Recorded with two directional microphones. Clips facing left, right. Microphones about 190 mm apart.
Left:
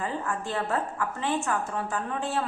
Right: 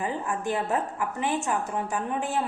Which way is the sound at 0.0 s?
15° right (ahead or behind).